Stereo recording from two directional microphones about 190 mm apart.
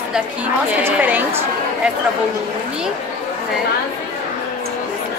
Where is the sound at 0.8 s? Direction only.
10° right (ahead or behind).